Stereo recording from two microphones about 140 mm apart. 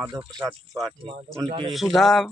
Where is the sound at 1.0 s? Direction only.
40° right (ahead or behind).